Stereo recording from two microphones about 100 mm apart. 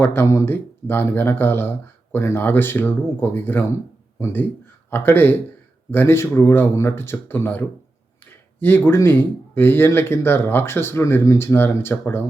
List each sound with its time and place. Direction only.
0.0 s speech: 25° left (ahead or behind)